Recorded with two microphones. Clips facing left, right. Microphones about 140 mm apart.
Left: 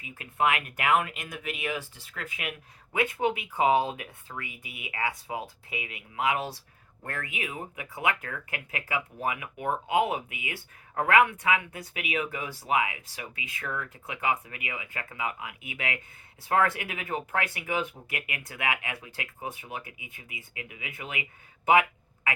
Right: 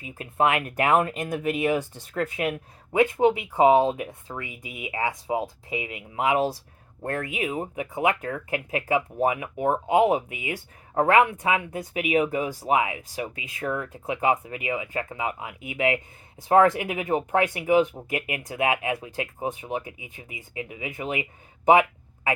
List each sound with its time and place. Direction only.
0.3 s speech: 30° right (ahead or behind)
10.2 s speech: 35° right (ahead or behind)
21.7 s a sound: 30° right (ahead or behind)